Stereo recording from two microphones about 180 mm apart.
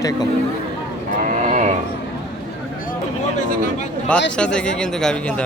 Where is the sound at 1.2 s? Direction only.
40° right (ahead or behind).